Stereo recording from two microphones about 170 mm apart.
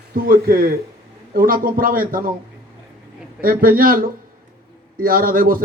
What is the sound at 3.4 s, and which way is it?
Speech, 55° right (ahead or behind).